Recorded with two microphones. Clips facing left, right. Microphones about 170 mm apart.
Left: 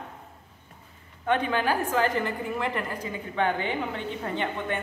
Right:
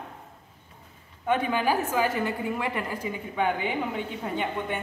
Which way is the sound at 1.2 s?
10° right (ahead or behind).